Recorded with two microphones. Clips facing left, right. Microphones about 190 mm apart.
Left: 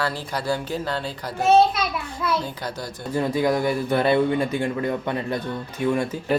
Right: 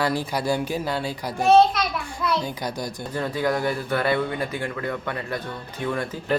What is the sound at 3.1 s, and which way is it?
Speech, 15° left (ahead or behind).